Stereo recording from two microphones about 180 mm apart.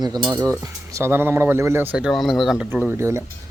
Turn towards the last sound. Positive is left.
turn(degrees=-15)  # may be behind; listen again after turning